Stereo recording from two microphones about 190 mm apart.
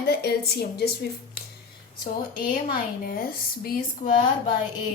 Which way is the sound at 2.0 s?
50° left (ahead or behind).